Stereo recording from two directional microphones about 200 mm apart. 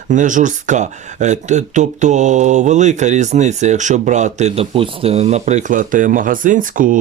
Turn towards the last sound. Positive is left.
turn(degrees=-40)  # may be behind; listen again after turning